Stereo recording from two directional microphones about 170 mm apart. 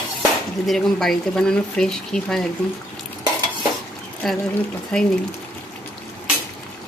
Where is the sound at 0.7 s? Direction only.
Centre (ahead or behind).